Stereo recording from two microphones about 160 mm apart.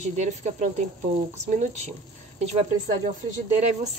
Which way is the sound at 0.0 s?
45° right (ahead or behind).